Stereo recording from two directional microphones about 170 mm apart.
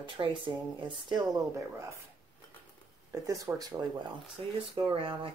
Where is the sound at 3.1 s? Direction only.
20° right (ahead or behind).